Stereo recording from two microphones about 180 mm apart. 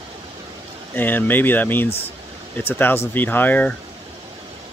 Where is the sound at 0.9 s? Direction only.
10° left (ahead or behind).